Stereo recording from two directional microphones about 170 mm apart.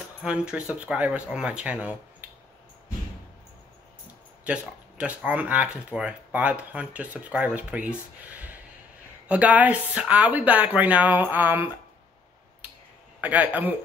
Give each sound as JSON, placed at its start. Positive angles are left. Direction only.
{"t": 0.2, "sound": "speech", "side_deg": -5}
{"t": 4.5, "sound": "speech", "side_deg": -10}
{"t": 13.2, "sound": "speech", "side_deg": -10}